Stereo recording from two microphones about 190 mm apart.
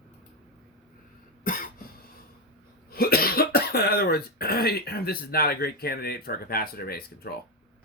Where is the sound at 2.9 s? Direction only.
55° left (ahead or behind).